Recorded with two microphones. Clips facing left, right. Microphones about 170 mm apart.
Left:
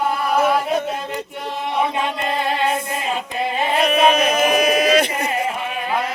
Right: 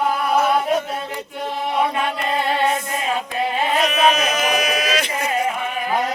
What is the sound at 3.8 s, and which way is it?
Chant, 55° left (ahead or behind).